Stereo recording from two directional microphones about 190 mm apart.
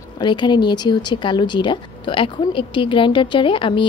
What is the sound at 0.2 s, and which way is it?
Speech, 25° left (ahead or behind).